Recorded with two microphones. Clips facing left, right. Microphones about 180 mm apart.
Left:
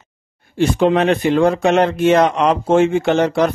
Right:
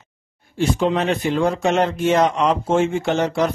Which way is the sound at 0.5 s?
60° left (ahead or behind).